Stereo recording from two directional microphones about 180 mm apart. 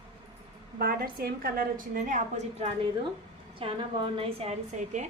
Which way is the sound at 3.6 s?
30° right (ahead or behind).